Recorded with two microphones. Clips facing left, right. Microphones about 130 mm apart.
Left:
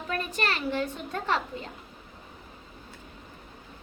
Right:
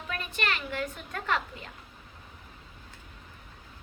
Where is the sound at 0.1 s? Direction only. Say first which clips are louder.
Left 3 dB; 35° left (ahead or behind).